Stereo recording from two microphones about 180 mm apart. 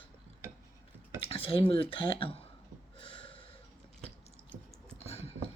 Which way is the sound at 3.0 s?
30° left (ahead or behind).